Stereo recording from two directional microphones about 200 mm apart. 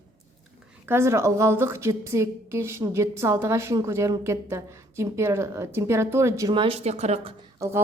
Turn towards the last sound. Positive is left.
turn(degrees=-15)  # may be behind; listen again after turning